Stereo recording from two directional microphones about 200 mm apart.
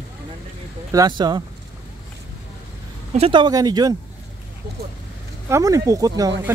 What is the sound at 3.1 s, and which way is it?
Speech, 25° right (ahead or behind).